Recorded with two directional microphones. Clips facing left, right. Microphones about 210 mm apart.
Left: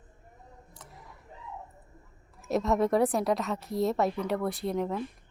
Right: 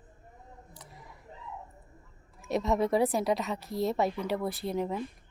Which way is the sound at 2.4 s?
Centre (ahead or behind).